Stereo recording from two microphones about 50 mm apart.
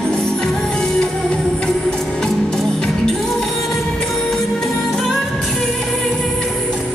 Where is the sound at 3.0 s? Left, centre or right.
Centre.